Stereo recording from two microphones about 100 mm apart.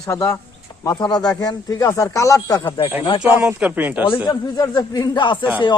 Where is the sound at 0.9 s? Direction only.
45° left (ahead or behind).